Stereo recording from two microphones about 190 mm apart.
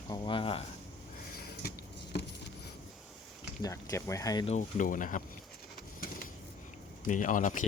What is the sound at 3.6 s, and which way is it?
Speech, 15° left (ahead or behind).